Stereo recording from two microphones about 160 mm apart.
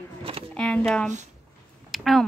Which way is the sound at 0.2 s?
40° right (ahead or behind).